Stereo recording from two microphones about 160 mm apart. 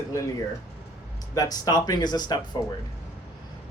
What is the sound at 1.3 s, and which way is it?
Speech, 25° left (ahead or behind).